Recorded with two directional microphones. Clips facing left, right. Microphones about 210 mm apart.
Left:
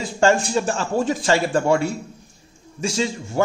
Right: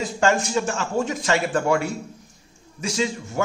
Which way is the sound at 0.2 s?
30° left (ahead or behind).